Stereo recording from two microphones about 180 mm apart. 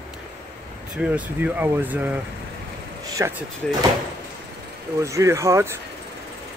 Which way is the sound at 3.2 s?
15° right (ahead or behind).